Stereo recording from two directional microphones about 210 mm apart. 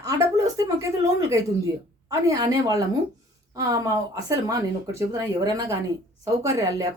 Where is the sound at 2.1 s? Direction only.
15° right (ahead or behind).